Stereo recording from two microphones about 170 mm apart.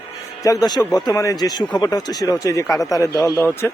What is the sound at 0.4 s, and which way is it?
Speech, 20° left (ahead or behind).